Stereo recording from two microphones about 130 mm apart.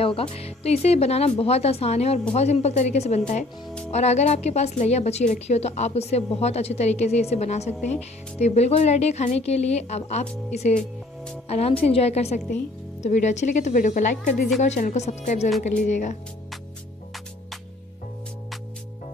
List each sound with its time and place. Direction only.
0.0 s a woman's voice: 45° left (ahead or behind)
11.4 s a woman's voice: 50° left (ahead or behind); by 14.5 s 85° left
14.6 s a woman's voice: 70° left (ahead or behind)